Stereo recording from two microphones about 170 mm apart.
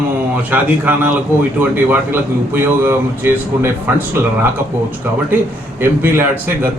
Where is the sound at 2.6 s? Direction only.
10° right (ahead or behind).